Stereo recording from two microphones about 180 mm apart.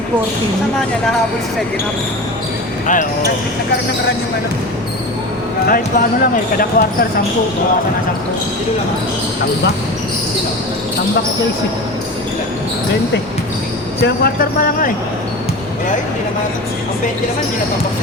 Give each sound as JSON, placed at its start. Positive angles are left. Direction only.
{"t": 2.8, "sound": "speech", "side_deg": 45}
{"t": 5.6, "sound": "speech", "side_deg": 55}
{"t": 14.0, "sound": "speech", "side_deg": 50}